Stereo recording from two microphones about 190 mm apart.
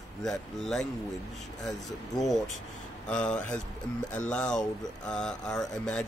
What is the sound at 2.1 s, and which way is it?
Speech, 20° left (ahead or behind).